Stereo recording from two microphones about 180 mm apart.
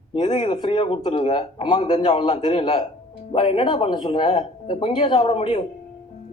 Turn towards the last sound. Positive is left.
turn(degrees=30)  # may be behind; listen again after turning